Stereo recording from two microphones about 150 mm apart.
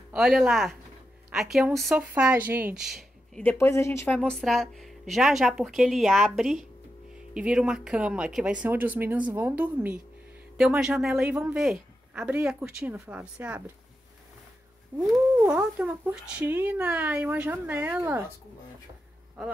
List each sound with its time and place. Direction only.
0.1 s speech: 5° right (ahead or behind)
2.9 s a sound: centre (ahead or behind)
3.5 s speech: 20° left (ahead or behind); by 13.7 s 10° right (ahead or behind)
15.0 s speech: 5° right (ahead or behind)